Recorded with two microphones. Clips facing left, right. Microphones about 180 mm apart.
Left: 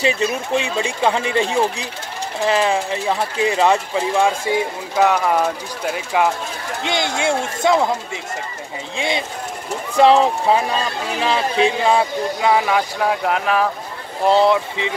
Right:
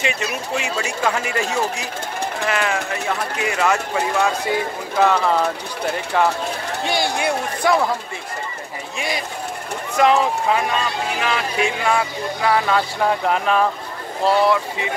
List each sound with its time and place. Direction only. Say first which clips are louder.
0.0 s speech: left 5 dB; 35° left (ahead or behind)
4.5 s speech: left 2 dB; 15° left (ahead or behind)
8.9 s speech: left 3 dB; 25° left (ahead or behind); by 13.7 s 5° left (ahead or behind)
14.2 s speech: left 2 dB; 20° left (ahead or behind)